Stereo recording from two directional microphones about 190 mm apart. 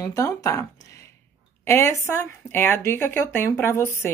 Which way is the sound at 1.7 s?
15° left (ahead or behind).